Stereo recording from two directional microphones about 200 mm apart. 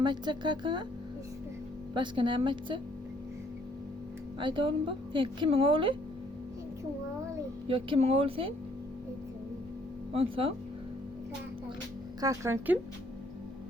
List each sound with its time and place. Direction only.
0.0 s speech: 20° right (ahead or behind)
2.0 s speech: 25° right (ahead or behind)
4.4 s speech: 25° right (ahead or behind)
7.7 s speech: 30° right (ahead or behind)
10.1 s speech: 30° right (ahead or behind)
12.2 s speech: 15° right (ahead or behind)